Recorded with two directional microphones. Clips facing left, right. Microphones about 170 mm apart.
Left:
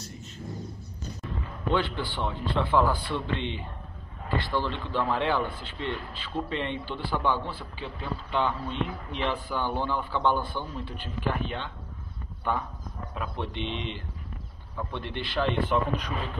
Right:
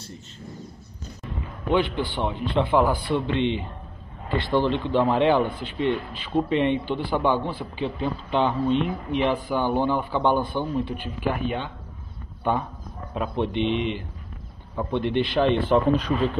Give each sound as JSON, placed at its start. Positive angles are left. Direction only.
{"t": 1.2, "sound": "a man's voice", "side_deg": -15}
{"t": 12.5, "sound": "speech", "side_deg": -20}